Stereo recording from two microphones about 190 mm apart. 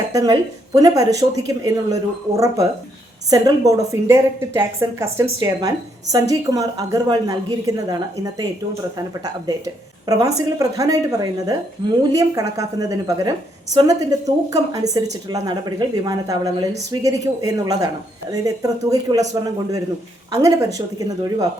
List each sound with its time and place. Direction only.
0.1 s a woman's voice: 20° right (ahead or behind)
20.3 s a woman's voice: 15° right (ahead or behind)